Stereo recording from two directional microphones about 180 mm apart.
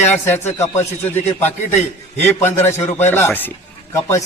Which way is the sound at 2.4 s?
10° left (ahead or behind).